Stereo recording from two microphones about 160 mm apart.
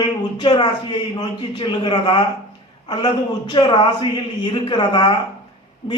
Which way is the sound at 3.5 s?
30° left (ahead or behind).